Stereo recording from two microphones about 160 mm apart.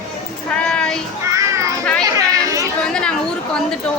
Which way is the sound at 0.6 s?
5° left (ahead or behind).